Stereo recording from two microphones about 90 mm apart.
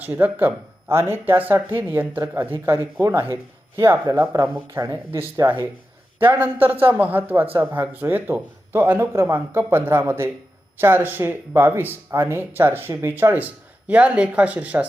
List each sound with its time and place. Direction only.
0.0 s a man's voice: 20° right (ahead or behind)